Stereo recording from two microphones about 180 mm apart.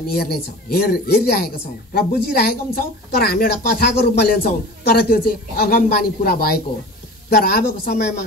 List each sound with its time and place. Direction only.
0.0 s speech: 60° left (ahead or behind)